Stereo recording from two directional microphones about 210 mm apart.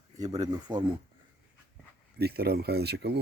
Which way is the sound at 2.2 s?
50° right (ahead or behind).